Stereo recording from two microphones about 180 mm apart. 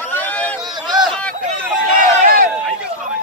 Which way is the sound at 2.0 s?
50° right (ahead or behind).